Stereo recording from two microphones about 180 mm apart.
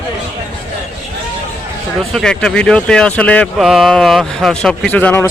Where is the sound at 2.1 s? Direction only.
5° left (ahead or behind).